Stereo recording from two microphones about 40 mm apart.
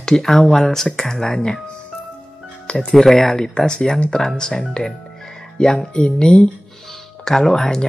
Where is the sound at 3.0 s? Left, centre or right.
Centre.